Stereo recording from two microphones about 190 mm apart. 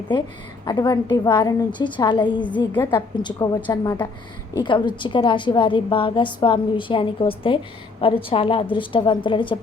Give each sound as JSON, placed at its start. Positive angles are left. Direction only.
{"t": 0.6, "sound": "a woman's voice", "side_deg": 20}
{"t": 4.6, "sound": "a woman's voice", "side_deg": 25}